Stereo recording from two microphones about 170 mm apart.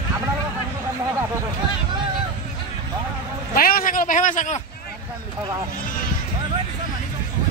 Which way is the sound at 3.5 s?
55° left (ahead or behind).